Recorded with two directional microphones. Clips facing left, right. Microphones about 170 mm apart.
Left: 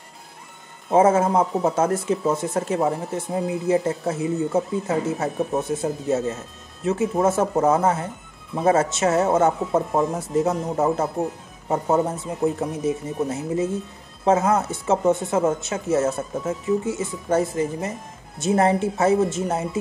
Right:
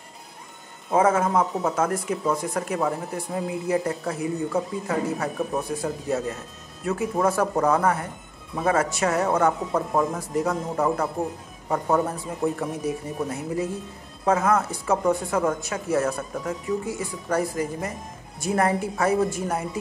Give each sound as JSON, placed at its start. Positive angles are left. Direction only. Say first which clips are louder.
{"t": 0.8, "sound": "speech", "louder": "left 4 dB", "side_deg": 25}